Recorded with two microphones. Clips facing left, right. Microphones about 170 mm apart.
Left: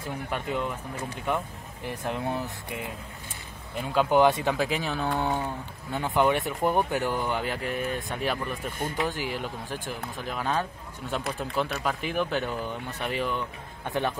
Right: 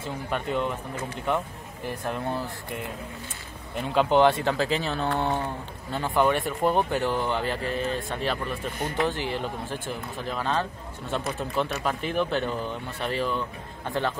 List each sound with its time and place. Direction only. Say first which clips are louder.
0.3 s speech: right 3 dB; 5° left (ahead or behind)
2.0 s speech: even; 15° left (ahead or behind)
3.7 s speech: right 1 dB; centre (ahead or behind)
8.7 s speech: right 2 dB; 50° right (ahead or behind)
9.3 s speech: right 3 dB; 10° left (ahead or behind)